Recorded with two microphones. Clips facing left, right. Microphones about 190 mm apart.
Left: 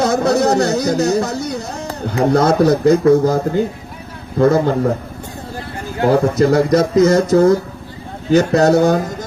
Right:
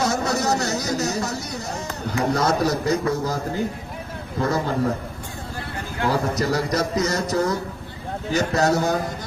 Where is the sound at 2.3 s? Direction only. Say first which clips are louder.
Left 9 dB; 55° left (ahead or behind).